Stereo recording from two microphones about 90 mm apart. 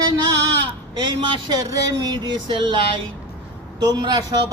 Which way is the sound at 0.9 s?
55° right (ahead or behind).